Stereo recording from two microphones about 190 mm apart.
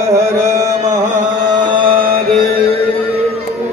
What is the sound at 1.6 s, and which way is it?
Chant, 25° right (ahead or behind).